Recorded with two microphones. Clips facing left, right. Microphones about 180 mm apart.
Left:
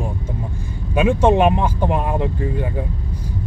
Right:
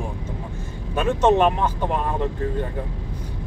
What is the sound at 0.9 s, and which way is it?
Speech, 10° left (ahead or behind).